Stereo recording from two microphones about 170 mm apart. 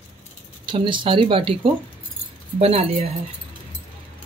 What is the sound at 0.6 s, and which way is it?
Speech, 30° right (ahead or behind).